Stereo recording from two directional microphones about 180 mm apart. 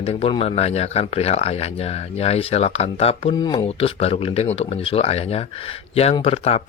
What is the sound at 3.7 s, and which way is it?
Speech, 35° left (ahead or behind).